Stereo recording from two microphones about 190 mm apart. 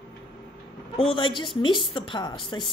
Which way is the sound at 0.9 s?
25° left (ahead or behind).